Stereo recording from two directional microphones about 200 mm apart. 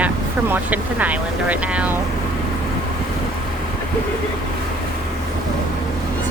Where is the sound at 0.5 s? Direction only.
10° right (ahead or behind).